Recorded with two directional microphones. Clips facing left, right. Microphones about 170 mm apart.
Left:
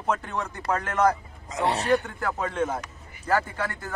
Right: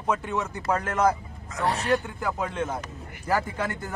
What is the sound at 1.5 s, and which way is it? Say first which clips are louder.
Speech: left 1 dB; 20° left (ahead or behind).